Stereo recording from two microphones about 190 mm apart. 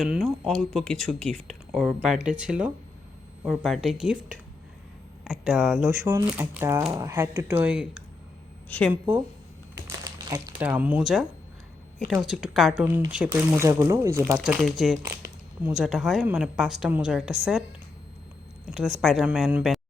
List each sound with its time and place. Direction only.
0.0 s speech: centre (ahead or behind)
5.2 s speech: 5° right (ahead or behind)
9.7 s a sound: 20° right (ahead or behind)
10.6 s speech: 10° right (ahead or behind)
14.3 s speech: centre (ahead or behind)
18.8 s speech: centre (ahead or behind)